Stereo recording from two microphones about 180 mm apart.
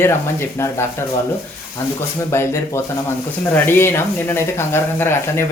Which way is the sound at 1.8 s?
15° left (ahead or behind).